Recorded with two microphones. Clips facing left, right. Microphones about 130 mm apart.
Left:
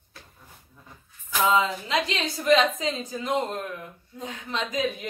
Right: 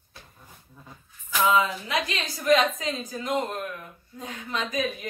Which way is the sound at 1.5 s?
25° left (ahead or behind).